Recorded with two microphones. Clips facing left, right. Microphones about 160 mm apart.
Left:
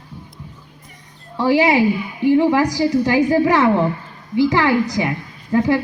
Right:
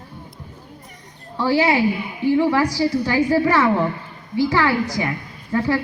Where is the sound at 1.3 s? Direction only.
15° left (ahead or behind).